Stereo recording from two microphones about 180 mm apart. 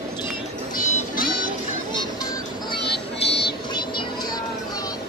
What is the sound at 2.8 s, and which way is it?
Music, 65° left (ahead or behind).